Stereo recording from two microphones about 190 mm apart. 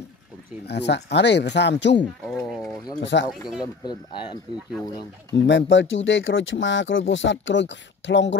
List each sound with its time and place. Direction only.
0.7 s speech: 65° left (ahead or behind)
2.2 s a sound: centre (ahead or behind)
3.0 s speech: 70° left (ahead or behind)
5.3 s speech: 70° left (ahead or behind)